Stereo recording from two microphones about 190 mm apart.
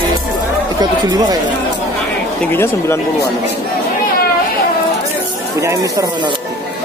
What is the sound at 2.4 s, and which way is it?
Speech, 10° left (ahead or behind).